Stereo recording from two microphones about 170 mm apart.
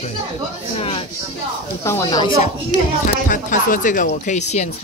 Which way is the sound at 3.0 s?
55° left (ahead or behind).